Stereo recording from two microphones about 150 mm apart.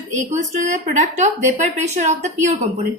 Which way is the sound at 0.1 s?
55° right (ahead or behind).